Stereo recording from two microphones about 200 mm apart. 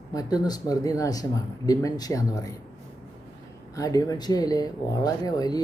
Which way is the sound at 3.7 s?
20° left (ahead or behind).